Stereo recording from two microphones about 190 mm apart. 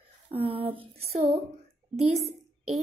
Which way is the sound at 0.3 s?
30° right (ahead or behind).